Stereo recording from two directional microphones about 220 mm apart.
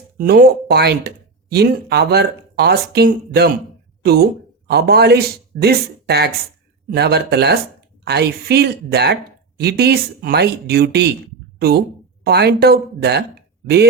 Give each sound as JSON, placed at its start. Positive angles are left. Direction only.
{"t": 0.2, "sound": "speech", "side_deg": -45}
{"t": 12.2, "sound": "speech", "side_deg": -45}